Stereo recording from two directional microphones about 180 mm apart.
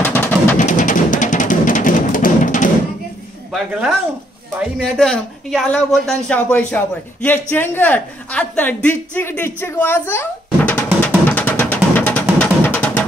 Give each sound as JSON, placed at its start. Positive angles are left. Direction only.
{"t": 0.0, "sound": "music", "side_deg": 10}
{"t": 0.6, "sound": "music", "side_deg": 45}
{"t": 3.5, "sound": "a woman's voice", "side_deg": -5}
{"t": 11.2, "sound": "music", "side_deg": 10}